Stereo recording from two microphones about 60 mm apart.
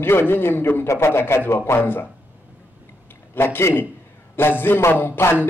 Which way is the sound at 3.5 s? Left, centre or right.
Left.